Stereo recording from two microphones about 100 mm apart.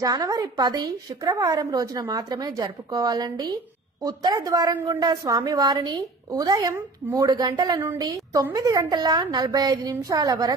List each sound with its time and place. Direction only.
0.0 s a woman's voice: 35° right (ahead or behind)